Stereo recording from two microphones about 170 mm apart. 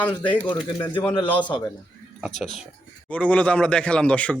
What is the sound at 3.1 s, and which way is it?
Speech, 10° left (ahead or behind).